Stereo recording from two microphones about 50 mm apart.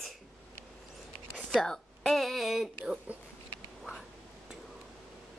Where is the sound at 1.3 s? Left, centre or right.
Centre.